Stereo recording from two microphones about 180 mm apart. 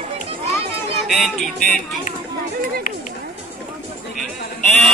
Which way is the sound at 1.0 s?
Centre (ahead or behind).